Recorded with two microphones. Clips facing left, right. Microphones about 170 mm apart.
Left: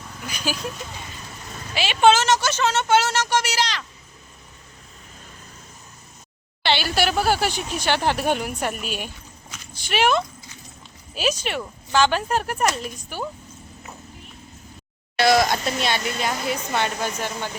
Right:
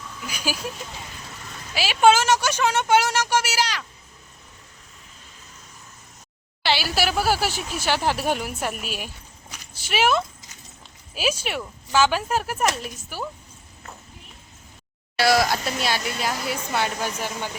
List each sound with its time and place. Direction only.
0.3 s speech: 10° right (ahead or behind)
1.7 s speech: 5° right (ahead or behind)
6.6 s speech: 5° right (ahead or behind)
15.2 s speech: 5° right (ahead or behind)